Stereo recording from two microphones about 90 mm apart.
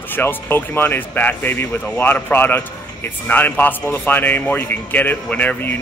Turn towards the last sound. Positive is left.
turn(degrees=20)  # may be behind; listen again after turning